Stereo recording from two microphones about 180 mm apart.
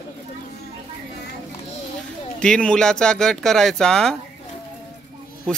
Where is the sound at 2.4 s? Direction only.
5° left (ahead or behind).